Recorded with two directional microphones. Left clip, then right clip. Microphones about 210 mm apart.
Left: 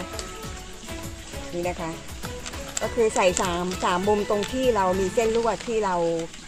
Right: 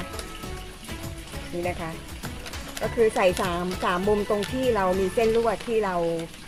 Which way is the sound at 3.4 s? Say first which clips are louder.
Left 1 dB; 20° left (ahead or behind).